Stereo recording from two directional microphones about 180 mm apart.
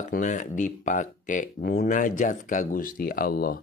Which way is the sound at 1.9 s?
45° left (ahead or behind).